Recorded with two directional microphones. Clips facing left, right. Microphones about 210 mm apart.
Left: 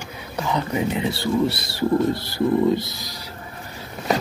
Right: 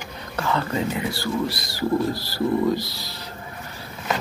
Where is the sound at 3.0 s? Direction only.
15° left (ahead or behind).